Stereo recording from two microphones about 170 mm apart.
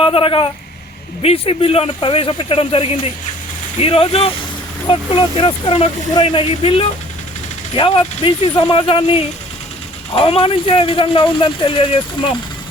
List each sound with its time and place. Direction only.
0.0 s speech: 30° left (ahead or behind)
10.2 s speech: 30° left (ahead or behind)